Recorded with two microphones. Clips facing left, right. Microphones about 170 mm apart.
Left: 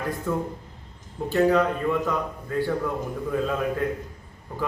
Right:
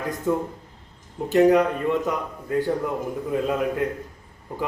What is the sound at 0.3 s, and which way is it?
A man's voice, 20° right (ahead or behind).